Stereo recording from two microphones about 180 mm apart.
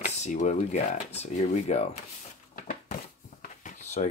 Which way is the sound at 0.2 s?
40° left (ahead or behind).